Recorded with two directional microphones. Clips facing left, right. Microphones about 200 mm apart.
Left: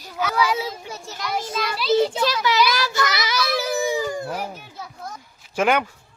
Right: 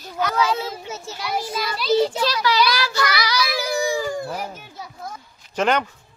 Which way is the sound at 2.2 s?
20° left (ahead or behind).